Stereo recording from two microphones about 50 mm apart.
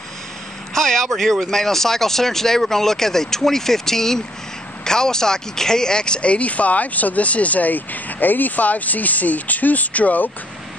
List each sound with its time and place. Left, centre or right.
0.7 s speech: centre; by 10.3 s left